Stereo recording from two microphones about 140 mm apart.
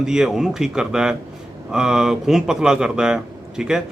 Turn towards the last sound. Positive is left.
turn(degrees=-5)  # may be behind; listen again after turning